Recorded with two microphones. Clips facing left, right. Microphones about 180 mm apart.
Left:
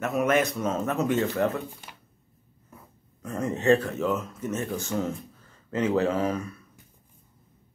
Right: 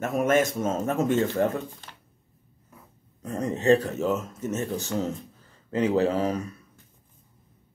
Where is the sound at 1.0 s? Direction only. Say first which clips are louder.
Right 2 dB; 25° right (ahead or behind).